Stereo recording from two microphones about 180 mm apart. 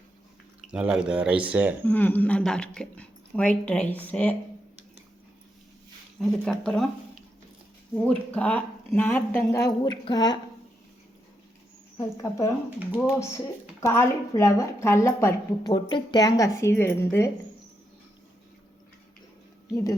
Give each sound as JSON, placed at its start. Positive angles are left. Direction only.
{"t": 0.7, "sound": "speech", "side_deg": -5}
{"t": 1.8, "sound": "a woman's voice", "side_deg": 10}
{"t": 6.1, "sound": "speech", "side_deg": 0}
{"t": 8.0, "sound": "a woman's voice", "side_deg": 5}
{"t": 11.9, "sound": "a woman's voice", "side_deg": 20}
{"t": 12.8, "sound": "speech", "side_deg": -10}
{"t": 13.8, "sound": "a woman's voice", "side_deg": 15}
{"t": 19.7, "sound": "speech", "side_deg": 20}